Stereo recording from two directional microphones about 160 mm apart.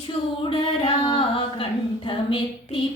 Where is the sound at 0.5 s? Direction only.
35° left (ahead or behind).